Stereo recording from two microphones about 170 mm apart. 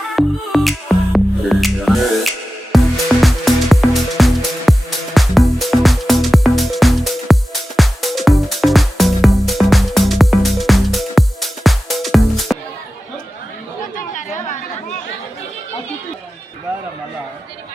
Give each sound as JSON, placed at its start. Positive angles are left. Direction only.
{"t": 0.2, "sound": "music", "side_deg": 0}
{"t": 13.9, "sound": "chatter", "side_deg": 50}